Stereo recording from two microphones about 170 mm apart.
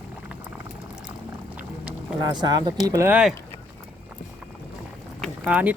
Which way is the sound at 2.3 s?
25° right (ahead or behind).